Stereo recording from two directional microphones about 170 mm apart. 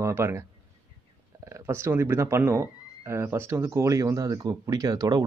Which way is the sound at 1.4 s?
15° right (ahead or behind).